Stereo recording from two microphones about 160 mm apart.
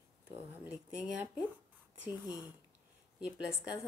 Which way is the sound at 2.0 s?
25° left (ahead or behind).